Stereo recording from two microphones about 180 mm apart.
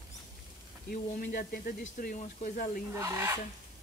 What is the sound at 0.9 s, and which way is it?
Speech, 50° left (ahead or behind).